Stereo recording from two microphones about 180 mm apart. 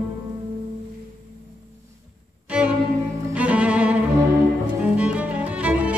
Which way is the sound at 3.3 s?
5° right (ahead or behind).